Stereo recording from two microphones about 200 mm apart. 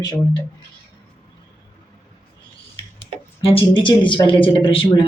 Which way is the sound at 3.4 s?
25° left (ahead or behind).